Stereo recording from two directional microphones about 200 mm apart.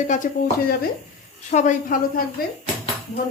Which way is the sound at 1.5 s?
40° left (ahead or behind).